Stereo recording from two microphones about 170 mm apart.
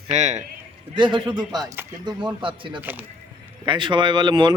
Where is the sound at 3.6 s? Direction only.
30° right (ahead or behind).